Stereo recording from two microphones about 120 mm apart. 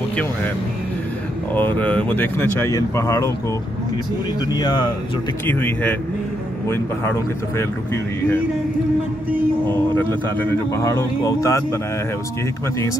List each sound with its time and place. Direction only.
0.1 s speech: 10° left (ahead or behind)
1.5 s speech: 15° left (ahead or behind)
2.7 s speech: 30° left (ahead or behind)
4.5 s speech: 35° left (ahead or behind)
5.5 s speech: 15° left (ahead or behind)
9.7 s speech: 15° left (ahead or behind)